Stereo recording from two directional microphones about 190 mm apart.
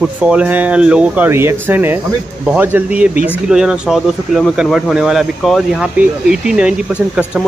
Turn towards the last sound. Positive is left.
turn(degrees=-5)  # may be behind; listen again after turning